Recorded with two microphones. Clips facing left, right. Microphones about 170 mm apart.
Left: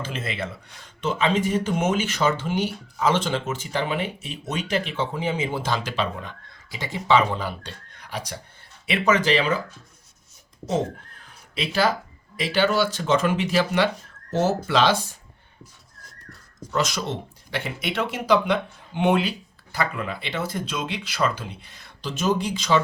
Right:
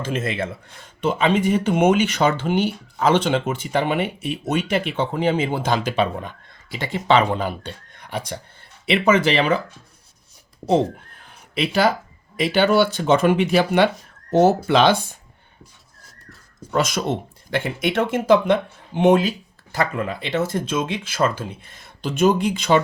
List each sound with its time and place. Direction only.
0.0 s speech: 50° right (ahead or behind)
11.5 s speech: 60° right (ahead or behind)
16.7 s speech: 55° right (ahead or behind)